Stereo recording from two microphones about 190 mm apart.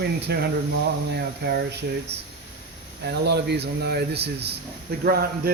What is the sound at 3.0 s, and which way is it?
Speech, 60° right (ahead or behind).